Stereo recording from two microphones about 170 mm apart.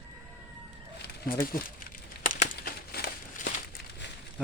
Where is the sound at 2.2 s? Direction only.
55° left (ahead or behind).